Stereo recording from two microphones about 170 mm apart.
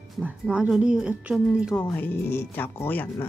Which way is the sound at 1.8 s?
10° left (ahead or behind).